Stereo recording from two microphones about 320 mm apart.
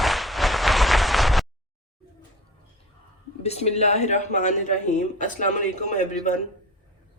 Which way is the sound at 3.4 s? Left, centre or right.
Centre.